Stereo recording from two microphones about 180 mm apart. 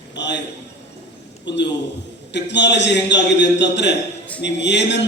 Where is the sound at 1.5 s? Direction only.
80° left.